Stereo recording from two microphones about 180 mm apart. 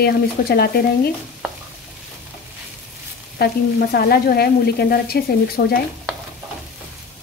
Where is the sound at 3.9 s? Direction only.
60° left (ahead or behind).